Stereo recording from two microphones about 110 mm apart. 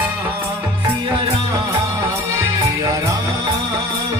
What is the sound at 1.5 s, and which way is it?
Music, 25° right (ahead or behind).